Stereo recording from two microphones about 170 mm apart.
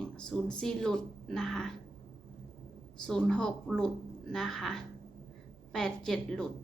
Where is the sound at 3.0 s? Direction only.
5° left (ahead or behind).